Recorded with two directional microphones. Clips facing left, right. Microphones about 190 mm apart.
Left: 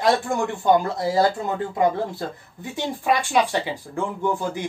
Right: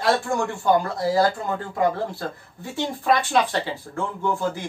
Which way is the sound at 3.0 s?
10° left (ahead or behind).